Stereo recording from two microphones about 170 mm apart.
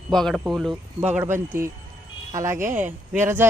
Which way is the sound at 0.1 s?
Centre (ahead or behind).